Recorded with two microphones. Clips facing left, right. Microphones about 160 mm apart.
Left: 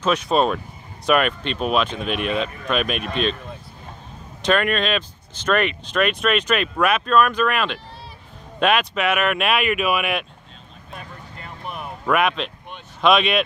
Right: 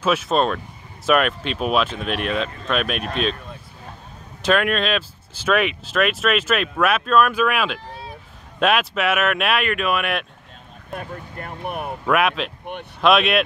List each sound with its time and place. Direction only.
0.0 s speech: 5° right (ahead or behind)
4.4 s speech: 5° right (ahead or behind)
7.9 s a sound: 50° right (ahead or behind)
8.5 s speech: 5° right (ahead or behind)
10.9 s vehicle: 55° right (ahead or behind)
12.1 s speech: centre (ahead or behind)